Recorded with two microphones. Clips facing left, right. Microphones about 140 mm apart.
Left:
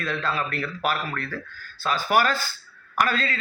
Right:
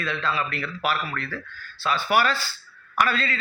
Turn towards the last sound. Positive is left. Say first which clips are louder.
# even
turn(degrees=45)  # may be behind; listen again after turning